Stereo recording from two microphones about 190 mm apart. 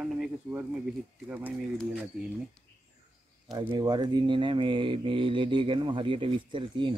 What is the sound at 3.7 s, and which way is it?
Speech, 20° right (ahead or behind).